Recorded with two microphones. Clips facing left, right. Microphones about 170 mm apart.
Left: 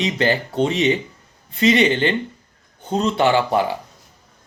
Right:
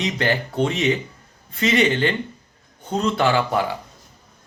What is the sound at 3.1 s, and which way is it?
Speech, 25° left (ahead or behind).